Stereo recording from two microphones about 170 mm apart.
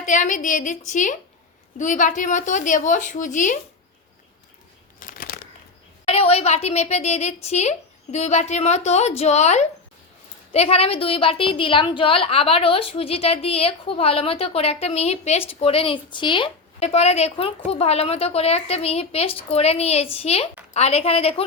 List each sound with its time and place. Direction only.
0.0 s a woman's voice: 45° left (ahead or behind)
4.9 s crumpling: 55° left (ahead or behind)
6.1 s a woman's voice: 35° left (ahead or behind)